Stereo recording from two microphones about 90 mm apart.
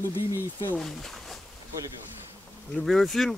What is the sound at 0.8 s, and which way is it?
Speech, 5° left (ahead or behind).